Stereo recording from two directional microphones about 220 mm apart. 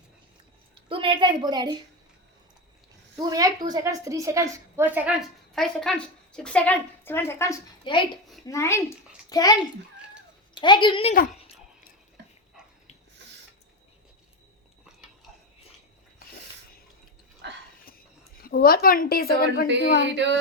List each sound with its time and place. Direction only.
0.9 s a woman's voice: 25° right (ahead or behind)
3.2 s a woman's voice: 15° right (ahead or behind)
5.5 s a woman's voice: 5° left (ahead or behind); by 11.1 s 20° left (ahead or behind)
17.4 s a sound: 50° right (ahead or behind)
18.4 s a woman's voice: 40° left (ahead or behind)